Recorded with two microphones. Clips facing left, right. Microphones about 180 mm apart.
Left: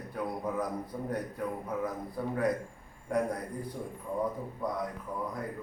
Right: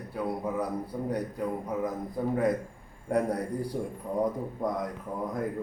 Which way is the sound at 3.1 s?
35° right (ahead or behind).